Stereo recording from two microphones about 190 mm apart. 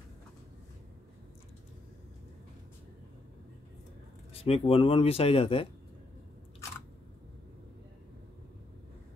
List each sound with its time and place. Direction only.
4.3 s speech: 30° left (ahead or behind)